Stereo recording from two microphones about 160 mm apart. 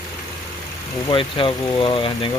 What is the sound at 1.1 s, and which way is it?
Speech, 30° left (ahead or behind).